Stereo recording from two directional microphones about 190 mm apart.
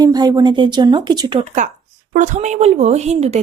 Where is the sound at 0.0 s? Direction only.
20° right (ahead or behind).